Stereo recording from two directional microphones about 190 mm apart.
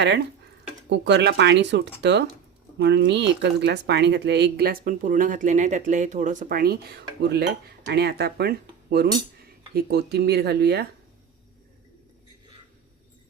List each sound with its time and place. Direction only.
0.9 s speech: 65° right (ahead or behind)